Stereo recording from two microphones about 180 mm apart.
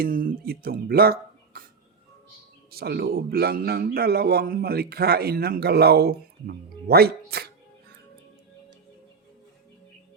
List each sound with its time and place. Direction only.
0.0 s speech: 50° right (ahead or behind)
2.7 s a man's voice: 60° right (ahead or behind)